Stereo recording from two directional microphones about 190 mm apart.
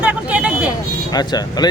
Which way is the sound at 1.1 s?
20° left (ahead or behind).